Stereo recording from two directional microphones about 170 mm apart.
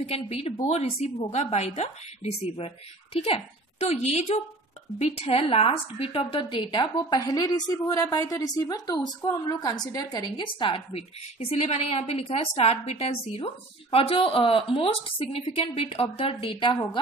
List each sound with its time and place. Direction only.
0.0 s a woman's voice: 35° left (ahead or behind)